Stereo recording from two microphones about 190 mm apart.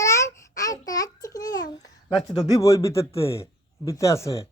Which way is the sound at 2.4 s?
15° left (ahead or behind).